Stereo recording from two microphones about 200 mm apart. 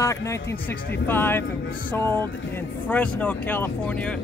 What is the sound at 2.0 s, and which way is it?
Speech, 20° right (ahead or behind).